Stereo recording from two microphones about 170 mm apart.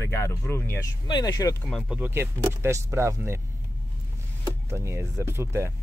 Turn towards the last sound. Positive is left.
turn(degrees=-15)  # may be behind; listen again after turning